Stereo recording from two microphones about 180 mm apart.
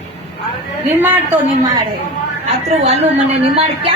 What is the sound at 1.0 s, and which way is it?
Speech, 10° right (ahead or behind).